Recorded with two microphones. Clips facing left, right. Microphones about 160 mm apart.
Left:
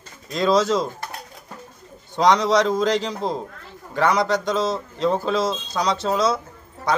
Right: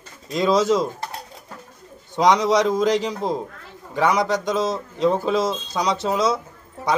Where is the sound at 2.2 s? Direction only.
15° right (ahead or behind).